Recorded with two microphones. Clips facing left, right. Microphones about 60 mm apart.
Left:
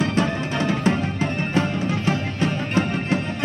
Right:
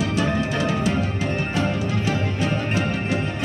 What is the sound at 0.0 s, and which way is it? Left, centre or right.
Music, left.